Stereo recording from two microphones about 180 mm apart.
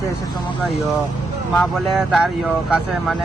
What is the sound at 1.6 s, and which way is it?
Speech, centre (ahead or behind).